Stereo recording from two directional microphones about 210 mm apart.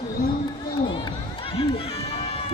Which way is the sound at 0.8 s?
25° left (ahead or behind).